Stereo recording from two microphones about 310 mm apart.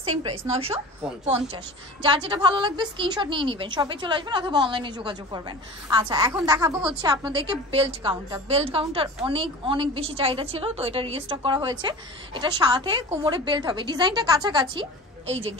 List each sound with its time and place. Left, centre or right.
0.2 s a woman's voice: centre